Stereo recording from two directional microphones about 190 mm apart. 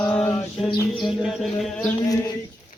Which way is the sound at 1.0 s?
Centre (ahead or behind).